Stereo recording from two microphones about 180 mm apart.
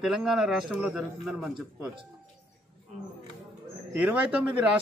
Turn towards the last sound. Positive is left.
turn(degrees=-5)  # may be behind; listen again after turning